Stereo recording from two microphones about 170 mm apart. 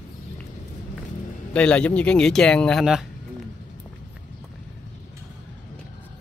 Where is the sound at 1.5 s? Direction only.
5° left (ahead or behind).